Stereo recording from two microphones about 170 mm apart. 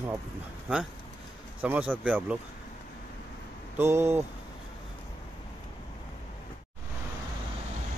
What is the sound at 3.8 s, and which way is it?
Speech, 15° right (ahead or behind).